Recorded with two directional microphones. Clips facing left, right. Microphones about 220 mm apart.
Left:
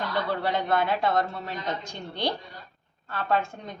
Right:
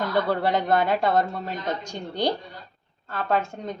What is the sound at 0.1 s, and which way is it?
A woman's voice, 45° right (ahead or behind).